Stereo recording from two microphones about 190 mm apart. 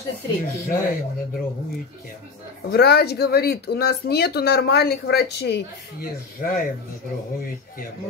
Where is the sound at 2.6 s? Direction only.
55° left (ahead or behind).